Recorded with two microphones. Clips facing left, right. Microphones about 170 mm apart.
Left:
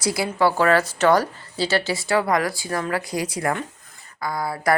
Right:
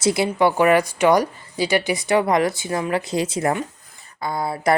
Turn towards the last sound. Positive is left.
turn(degrees=-25)  # may be behind; listen again after turning